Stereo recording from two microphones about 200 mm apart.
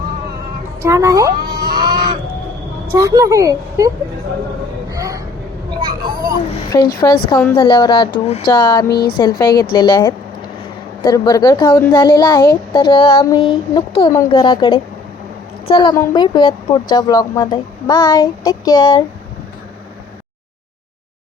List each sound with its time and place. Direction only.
0.8 s a woman's voice: 15° right (ahead or behind)
1.7 s a sound: 20° right (ahead or behind)
2.9 s a woman's voice: 15° right (ahead or behind)
4.9 s a sound: 15° right (ahead or behind)
5.8 s speech: 20° right (ahead or behind)
6.7 s a woman's voice: 20° left (ahead or behind)
8.9 s a woman's voice: 50° left (ahead or behind)
9.1 s a woman's voice: 20° left (ahead or behind)